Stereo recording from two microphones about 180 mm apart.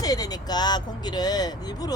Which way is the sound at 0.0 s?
20° left (ahead or behind).